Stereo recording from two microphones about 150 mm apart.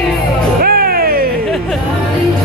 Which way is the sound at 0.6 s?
85° right.